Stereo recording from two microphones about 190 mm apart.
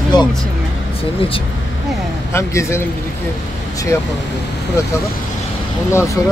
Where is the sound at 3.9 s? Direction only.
15° left (ahead or behind).